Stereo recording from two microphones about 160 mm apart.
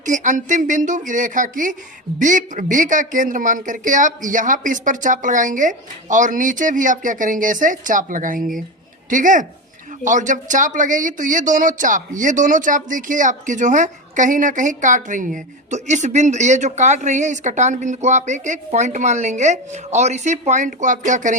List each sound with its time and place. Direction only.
0.0 s speech: 50° right (ahead or behind)